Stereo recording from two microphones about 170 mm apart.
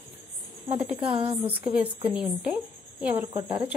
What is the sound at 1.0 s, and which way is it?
Speech, 30° right (ahead or behind).